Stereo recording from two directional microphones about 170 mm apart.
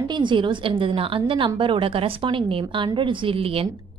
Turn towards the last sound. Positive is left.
turn(degrees=-35)  # may be behind; listen again after turning